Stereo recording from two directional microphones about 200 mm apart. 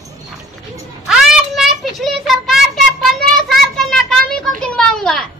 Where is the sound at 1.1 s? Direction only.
5° right (ahead or behind).